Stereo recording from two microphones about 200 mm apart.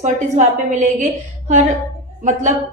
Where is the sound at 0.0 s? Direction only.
40° right (ahead or behind).